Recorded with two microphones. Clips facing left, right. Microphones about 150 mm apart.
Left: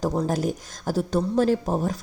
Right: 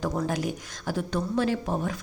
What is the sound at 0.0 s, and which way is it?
A woman's voice, 35° left (ahead or behind).